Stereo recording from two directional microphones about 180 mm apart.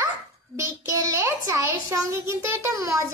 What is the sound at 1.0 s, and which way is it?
A child's voice, 15° right (ahead or behind).